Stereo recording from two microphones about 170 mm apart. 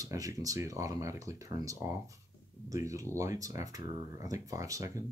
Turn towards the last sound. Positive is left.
turn(degrees=-20)  # may be behind; listen again after turning